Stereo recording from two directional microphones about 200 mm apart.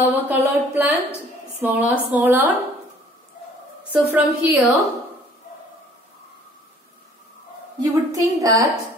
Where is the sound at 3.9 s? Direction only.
10° right (ahead or behind).